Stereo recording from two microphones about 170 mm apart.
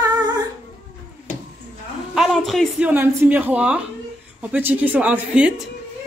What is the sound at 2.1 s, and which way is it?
Speech, centre (ahead or behind).